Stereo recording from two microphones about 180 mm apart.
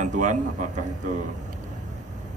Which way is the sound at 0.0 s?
45° right (ahead or behind).